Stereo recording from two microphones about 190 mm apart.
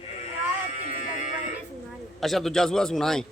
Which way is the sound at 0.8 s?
40° left (ahead or behind).